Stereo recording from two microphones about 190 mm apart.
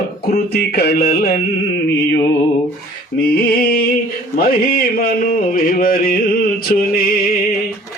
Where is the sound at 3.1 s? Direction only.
50° left (ahead or behind).